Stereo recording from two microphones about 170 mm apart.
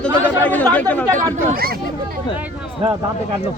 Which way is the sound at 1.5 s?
60° right (ahead or behind).